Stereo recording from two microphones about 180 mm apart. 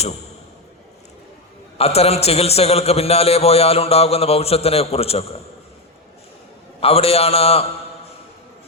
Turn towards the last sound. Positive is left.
turn(degrees=35)  # may be behind; listen again after turning